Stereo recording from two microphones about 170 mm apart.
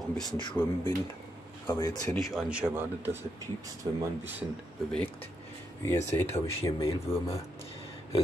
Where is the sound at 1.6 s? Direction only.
15° left (ahead or behind).